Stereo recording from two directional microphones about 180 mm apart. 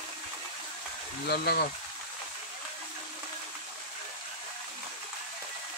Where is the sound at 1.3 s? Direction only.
60° left (ahead or behind).